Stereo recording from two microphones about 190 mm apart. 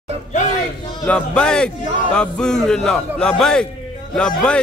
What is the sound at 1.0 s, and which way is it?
A man's voice, 5° left (ahead or behind).